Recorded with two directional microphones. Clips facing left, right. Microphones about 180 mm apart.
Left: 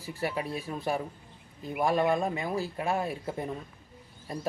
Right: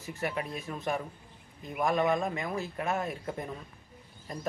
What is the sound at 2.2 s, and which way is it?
Speech, 30° left (ahead or behind).